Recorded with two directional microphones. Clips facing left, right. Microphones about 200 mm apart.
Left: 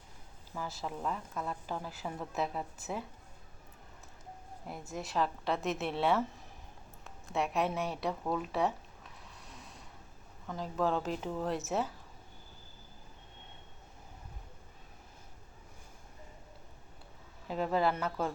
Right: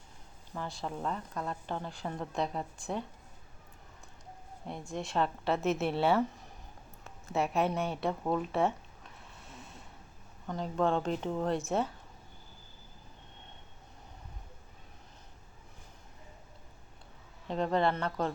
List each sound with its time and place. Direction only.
0.5 s a woman's voice: 5° left (ahead or behind)
4.6 s a woman's voice: 5° left (ahead or behind)
8.3 s a sound: centre (ahead or behind)
10.4 s a woman's voice: centre (ahead or behind)
17.5 s a woman's voice: 5° left (ahead or behind)